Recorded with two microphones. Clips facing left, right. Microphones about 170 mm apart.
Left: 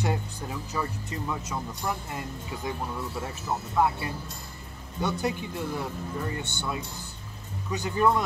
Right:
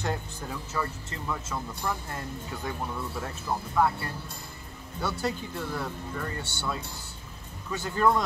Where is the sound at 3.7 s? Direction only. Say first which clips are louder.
Left 1 dB; 20° left (ahead or behind).